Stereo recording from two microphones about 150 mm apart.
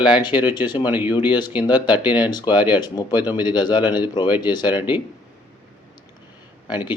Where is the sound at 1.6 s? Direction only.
30° left (ahead or behind).